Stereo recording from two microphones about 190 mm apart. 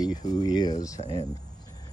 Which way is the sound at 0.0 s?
20° left (ahead or behind).